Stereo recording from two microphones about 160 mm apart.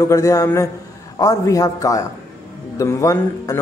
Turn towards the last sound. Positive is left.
turn(degrees=20)  # may be behind; listen again after turning